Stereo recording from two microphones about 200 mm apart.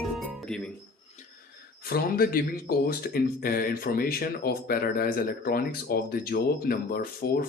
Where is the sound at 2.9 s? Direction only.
50° left (ahead or behind).